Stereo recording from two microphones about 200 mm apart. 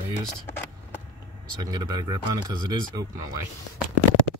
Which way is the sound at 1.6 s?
20° right (ahead or behind).